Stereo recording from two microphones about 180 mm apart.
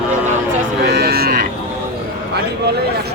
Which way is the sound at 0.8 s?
60° right (ahead or behind).